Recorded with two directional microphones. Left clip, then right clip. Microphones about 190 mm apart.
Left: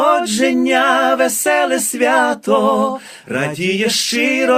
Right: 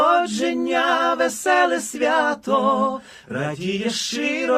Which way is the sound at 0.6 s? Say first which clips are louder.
Left 5 dB; 45° left (ahead or behind).